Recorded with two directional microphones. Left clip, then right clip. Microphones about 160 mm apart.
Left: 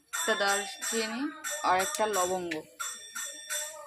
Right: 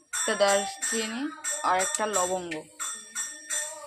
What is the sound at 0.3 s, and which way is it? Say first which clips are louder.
Speech: right 5 dB; 20° right (ahead or behind).